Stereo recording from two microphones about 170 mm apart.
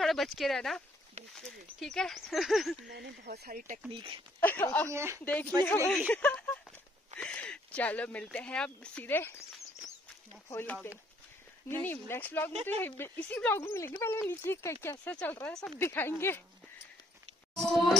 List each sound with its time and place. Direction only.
0.0 s speech: centre (ahead or behind)
2.9 s speech: 75° right (ahead or behind); by 3.8 s 50° right (ahead or behind)
3.9 s speech: 30° right (ahead or behind)
4.4 s speech: 10° left (ahead or behind)
4.9 s speech: 15° right (ahead or behind)
5.2 s speech: 10° left (ahead or behind)
10.5 s speech: 10° left (ahead or behind)
17.6 s speech: centre (ahead or behind)